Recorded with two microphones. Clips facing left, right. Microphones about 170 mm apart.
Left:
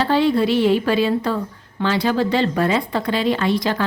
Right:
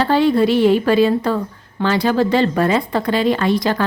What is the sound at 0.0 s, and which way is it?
Speech, 50° right (ahead or behind).